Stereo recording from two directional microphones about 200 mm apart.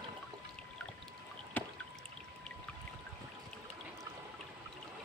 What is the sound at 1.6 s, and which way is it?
Music, 10° left (ahead or behind).